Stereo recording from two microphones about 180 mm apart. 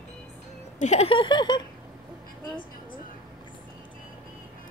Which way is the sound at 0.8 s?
35° left (ahead or behind).